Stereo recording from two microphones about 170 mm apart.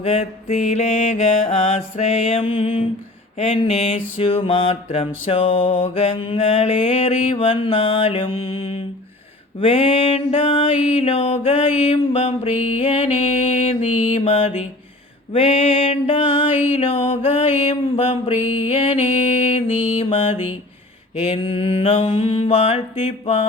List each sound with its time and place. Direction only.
0.0 s mantra: 40° left (ahead or behind)